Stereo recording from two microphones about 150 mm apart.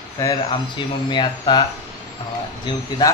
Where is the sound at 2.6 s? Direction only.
30° left (ahead or behind).